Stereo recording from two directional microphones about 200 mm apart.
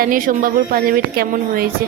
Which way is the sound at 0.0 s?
45° right (ahead or behind).